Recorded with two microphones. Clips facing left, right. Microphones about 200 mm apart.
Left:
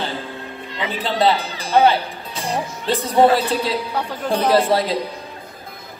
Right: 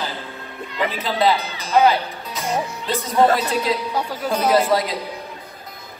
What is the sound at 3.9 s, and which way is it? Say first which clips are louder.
Speech: even; 10° right (ahead or behind).